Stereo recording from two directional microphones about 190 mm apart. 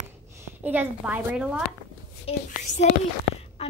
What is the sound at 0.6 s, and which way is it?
A woman's voice, 10° right (ahead or behind).